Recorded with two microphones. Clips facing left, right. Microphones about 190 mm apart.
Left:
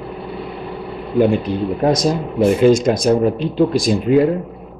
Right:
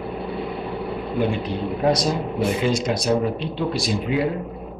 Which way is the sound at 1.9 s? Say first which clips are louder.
Left 4 dB; 45° left (ahead or behind).